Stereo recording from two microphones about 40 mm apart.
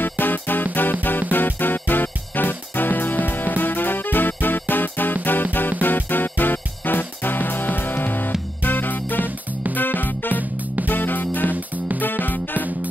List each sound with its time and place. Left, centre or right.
0.0 s music: left
11.5 s music: right
12.0 s music: left